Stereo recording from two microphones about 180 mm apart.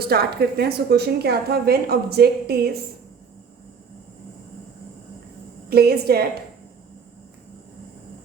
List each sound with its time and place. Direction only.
0.0 s a woman's voice: 60° right (ahead or behind)
5.6 s a woman's voice: 60° right (ahead or behind)